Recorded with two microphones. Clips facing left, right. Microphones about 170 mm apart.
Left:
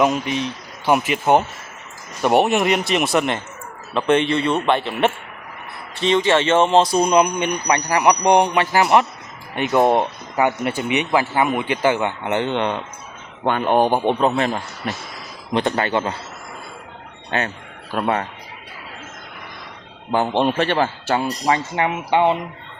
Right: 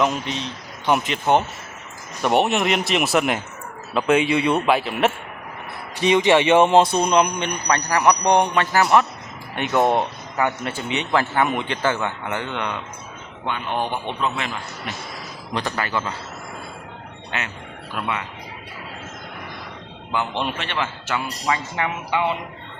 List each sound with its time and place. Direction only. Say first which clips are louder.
0.0 s a man's voice: left 4 dB; 10° left (ahead or behind)
2.2 s a man's voice: left 3 dB; 5° left (ahead or behind)
6.0 s speech: right 1 dB; 15° right (ahead or behind)
6.9 s speech: left 2 dB; 5° left (ahead or behind); by 12.8 s 25° left (ahead or behind)
13.4 s a man's voice: left 8 dB; 50° left (ahead or behind)
15.5 s a man's voice: left 6 dB; 25° left (ahead or behind)
17.9 s speech: left 7 dB; 40° left (ahead or behind)
20.1 s speech: left 7 dB; 40° left (ahead or behind)